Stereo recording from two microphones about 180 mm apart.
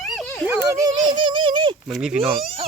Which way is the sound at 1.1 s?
25° right (ahead or behind).